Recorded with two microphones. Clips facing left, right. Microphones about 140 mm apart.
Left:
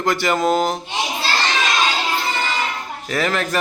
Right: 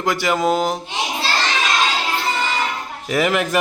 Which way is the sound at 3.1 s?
15° right (ahead or behind).